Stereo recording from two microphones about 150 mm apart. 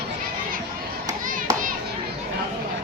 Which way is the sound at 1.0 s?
65° right (ahead or behind).